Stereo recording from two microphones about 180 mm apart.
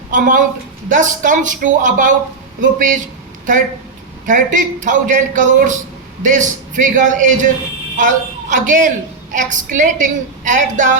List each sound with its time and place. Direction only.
0.1 s a woman's voice: 45° right (ahead or behind)
4.3 s a woman's voice: 45° right (ahead or behind)